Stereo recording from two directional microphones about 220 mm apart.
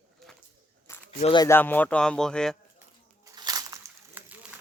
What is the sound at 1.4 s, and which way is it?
Speech, 10° left (ahead or behind).